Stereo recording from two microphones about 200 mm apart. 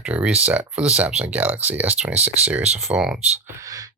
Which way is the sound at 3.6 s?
15° right (ahead or behind).